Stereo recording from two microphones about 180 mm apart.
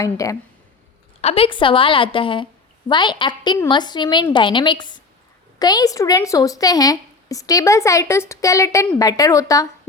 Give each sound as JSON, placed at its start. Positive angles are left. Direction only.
{"t": 0.0, "sound": "a woman's voice", "side_deg": 20}
{"t": 1.2, "sound": "a woman's voice", "side_deg": 35}